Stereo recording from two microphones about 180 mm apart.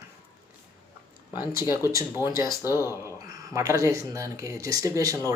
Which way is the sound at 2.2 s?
15° right (ahead or behind).